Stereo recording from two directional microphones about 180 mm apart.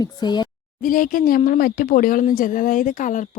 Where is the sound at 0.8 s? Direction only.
50° left (ahead or behind).